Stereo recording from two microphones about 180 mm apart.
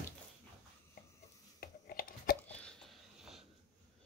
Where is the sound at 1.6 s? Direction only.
55° left (ahead or behind).